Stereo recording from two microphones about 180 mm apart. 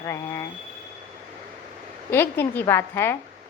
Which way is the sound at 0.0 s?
15° left (ahead or behind).